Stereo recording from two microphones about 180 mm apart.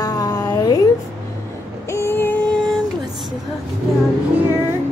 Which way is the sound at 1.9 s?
15° left (ahead or behind).